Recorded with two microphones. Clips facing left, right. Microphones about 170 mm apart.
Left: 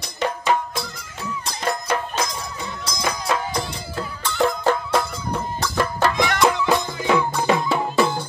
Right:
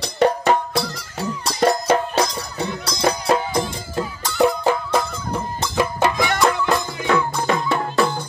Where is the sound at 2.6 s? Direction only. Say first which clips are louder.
Right 4 dB; 65° right (ahead or behind).